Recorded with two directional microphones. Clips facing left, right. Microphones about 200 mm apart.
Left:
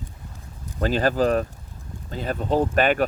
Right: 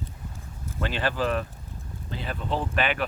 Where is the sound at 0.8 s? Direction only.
40° left (ahead or behind).